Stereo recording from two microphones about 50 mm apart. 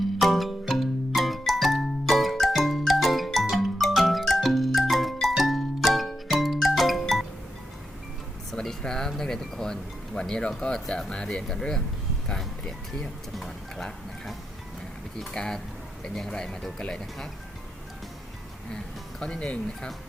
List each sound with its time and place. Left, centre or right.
0.2 s music: centre
8.6 s speech: centre
13.3 s speech: centre
19.2 s speech: centre